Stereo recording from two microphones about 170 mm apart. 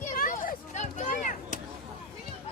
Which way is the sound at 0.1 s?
55° left (ahead or behind).